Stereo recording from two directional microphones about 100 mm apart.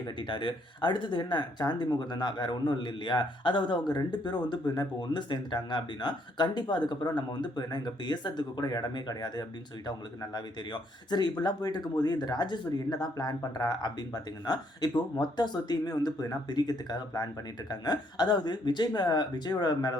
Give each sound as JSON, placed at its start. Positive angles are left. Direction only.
{"t": 0.2, "sound": "speech", "side_deg": 50}